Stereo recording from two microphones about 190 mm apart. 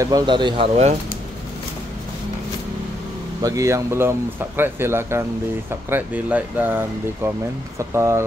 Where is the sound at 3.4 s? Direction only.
15° right (ahead or behind).